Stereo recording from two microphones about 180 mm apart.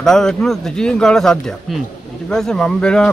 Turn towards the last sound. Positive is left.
turn(degrees=5)  # may be behind; listen again after turning